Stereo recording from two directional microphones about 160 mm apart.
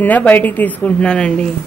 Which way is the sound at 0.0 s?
10° left (ahead or behind).